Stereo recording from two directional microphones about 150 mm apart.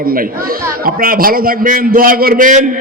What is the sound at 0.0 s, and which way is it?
A man's voice, 75° right (ahead or behind).